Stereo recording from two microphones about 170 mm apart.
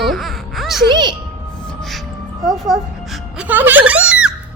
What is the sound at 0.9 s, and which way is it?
Speech, 25° right (ahead or behind).